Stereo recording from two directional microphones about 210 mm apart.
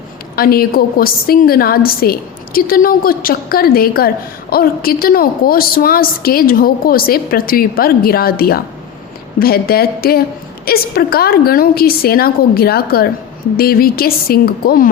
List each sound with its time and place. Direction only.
0.3 s a woman's voice: 45° left (ahead or behind)